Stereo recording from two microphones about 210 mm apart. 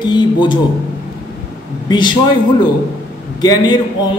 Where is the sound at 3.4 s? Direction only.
20° left (ahead or behind).